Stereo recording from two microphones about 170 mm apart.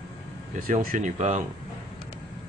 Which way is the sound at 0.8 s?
50° right (ahead or behind).